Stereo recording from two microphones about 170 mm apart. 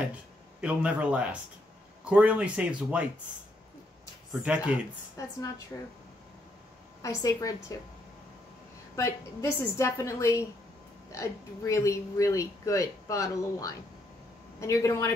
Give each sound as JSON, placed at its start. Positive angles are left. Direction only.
{"t": 0.1, "sound": "speech", "side_deg": -10}
{"t": 4.3, "sound": "speech", "side_deg": -5}
{"t": 5.2, "sound": "a woman's voice", "side_deg": 20}
{"t": 7.0, "sound": "a woman's voice", "side_deg": 20}
{"t": 8.9, "sound": "a woman's voice", "side_deg": 15}